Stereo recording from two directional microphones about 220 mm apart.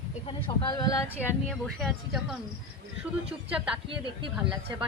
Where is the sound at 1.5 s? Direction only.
Centre (ahead or behind).